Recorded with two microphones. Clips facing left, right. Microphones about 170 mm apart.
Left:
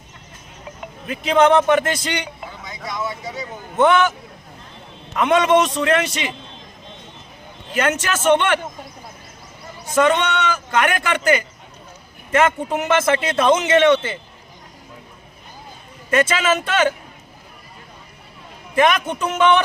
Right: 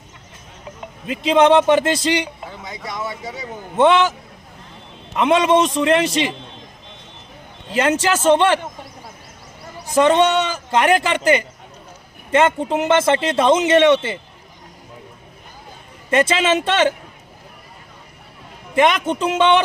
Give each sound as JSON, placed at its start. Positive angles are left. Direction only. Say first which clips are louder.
{"t": 1.0, "sound": "a man's voice", "louder": "right 1 dB", "side_deg": -25}
{"t": 5.1, "sound": "a man's voice", "louder": "right 1 dB", "side_deg": -25}
{"t": 7.7, "sound": "a man's voice", "louder": "right 3 dB", "side_deg": -30}
{"t": 9.8, "sound": "a man's voice", "louder": "right 3 dB", "side_deg": -30}
{"t": 16.0, "sound": "a man's voice", "louder": "right 1 dB", "side_deg": -25}
{"t": 18.7, "sound": "a man's voice", "louder": "right 1 dB", "side_deg": -25}